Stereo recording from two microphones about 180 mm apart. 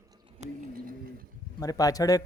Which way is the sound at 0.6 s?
55° right (ahead or behind).